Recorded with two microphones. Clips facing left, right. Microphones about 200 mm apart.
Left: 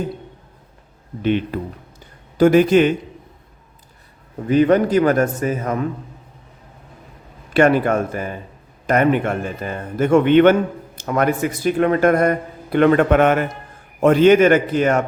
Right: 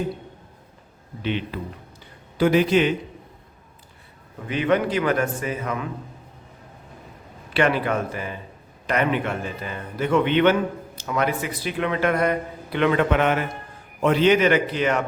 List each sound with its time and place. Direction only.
1.2 s a man's voice: 50° left (ahead or behind)
4.4 s a man's voice: 40° left (ahead or behind)
7.5 s a man's voice: 45° left (ahead or behind)